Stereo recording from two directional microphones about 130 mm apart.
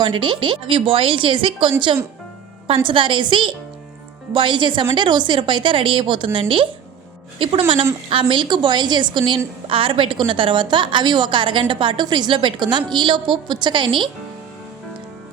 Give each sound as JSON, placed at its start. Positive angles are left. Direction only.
{"t": 0.0, "sound": "a woman's voice", "side_deg": -40}